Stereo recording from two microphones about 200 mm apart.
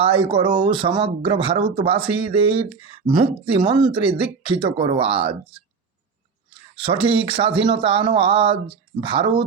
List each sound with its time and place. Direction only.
0.0 s speech: 25° right (ahead or behind)
6.7 s speech: 25° right (ahead or behind)